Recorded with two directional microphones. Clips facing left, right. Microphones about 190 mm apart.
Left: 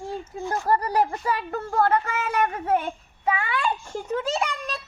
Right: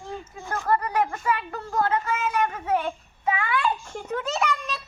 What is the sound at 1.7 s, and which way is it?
Speech, 60° left (ahead or behind).